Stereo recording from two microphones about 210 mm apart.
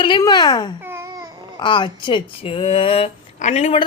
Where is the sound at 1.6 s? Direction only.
20° left (ahead or behind).